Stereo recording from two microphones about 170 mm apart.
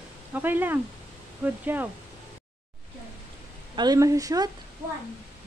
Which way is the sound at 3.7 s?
25° right (ahead or behind).